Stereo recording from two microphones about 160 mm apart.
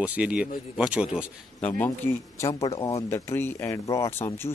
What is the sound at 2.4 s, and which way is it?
Speech, 20° left (ahead or behind).